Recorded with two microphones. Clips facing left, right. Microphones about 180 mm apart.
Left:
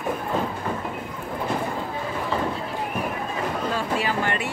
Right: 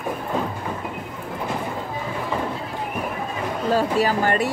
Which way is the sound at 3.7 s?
40° right (ahead or behind).